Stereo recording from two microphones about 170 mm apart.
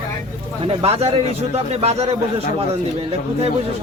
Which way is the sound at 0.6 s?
35° right (ahead or behind).